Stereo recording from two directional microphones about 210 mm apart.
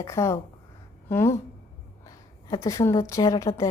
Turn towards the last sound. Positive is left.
turn(degrees=15)  # may be behind; listen again after turning